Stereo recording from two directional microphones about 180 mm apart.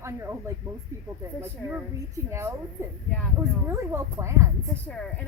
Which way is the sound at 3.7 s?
15° right (ahead or behind).